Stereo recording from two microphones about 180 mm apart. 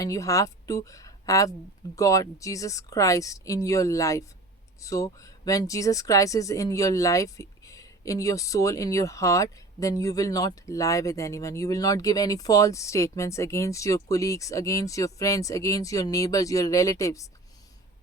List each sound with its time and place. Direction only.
0.0 s a woman's voice: 15° left (ahead or behind)